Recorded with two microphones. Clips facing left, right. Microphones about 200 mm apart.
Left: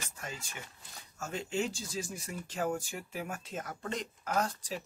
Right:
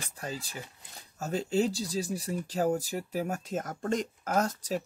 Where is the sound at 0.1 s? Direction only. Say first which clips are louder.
Right 6 dB; 35° right (ahead or behind).